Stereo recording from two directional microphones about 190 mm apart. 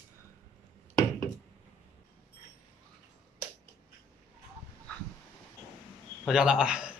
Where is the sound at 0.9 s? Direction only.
15° left (ahead or behind).